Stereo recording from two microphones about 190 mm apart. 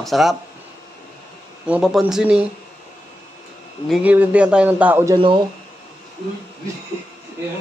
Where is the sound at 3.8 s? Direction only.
5° right (ahead or behind).